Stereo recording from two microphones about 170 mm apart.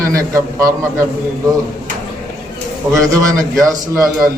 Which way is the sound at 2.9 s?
20° right (ahead or behind).